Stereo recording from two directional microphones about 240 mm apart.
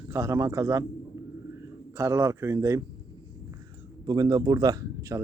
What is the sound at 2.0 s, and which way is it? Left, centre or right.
Speech, centre.